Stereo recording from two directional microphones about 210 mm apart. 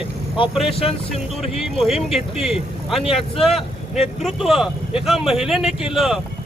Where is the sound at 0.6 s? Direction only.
25° left (ahead or behind).